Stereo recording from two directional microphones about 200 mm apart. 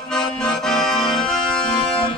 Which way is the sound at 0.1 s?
5° left (ahead or behind).